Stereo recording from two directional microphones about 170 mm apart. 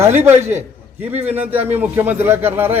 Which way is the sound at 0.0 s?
15° right (ahead or behind).